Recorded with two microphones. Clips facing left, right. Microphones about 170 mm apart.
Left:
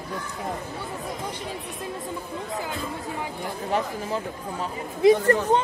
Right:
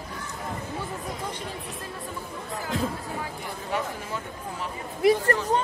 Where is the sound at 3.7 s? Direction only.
35° left (ahead or behind).